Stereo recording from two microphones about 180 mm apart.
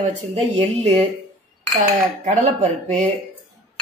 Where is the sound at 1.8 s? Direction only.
40° right (ahead or behind).